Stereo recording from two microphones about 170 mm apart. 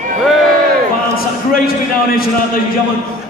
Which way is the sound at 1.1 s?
60° left (ahead or behind).